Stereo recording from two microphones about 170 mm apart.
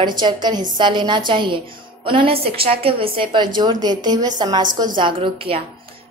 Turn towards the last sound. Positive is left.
turn(degrees=-35)  # may be behind; listen again after turning